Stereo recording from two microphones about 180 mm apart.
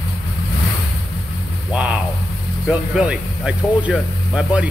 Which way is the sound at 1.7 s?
5° right (ahead or behind).